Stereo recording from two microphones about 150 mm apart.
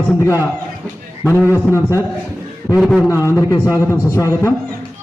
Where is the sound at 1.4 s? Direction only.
15° left (ahead or behind).